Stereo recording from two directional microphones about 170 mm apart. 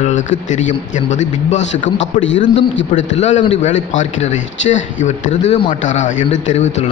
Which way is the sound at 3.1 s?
45° left (ahead or behind).